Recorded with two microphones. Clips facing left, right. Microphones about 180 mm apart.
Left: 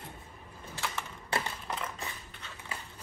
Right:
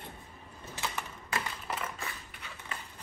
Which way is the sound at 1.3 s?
30° left (ahead or behind).